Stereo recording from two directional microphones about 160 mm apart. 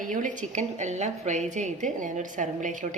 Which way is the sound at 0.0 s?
55° right (ahead or behind).